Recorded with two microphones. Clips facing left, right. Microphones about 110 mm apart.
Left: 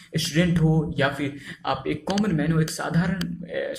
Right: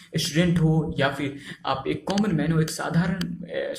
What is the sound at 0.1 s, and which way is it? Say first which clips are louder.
Speech: even; 30° right (ahead or behind).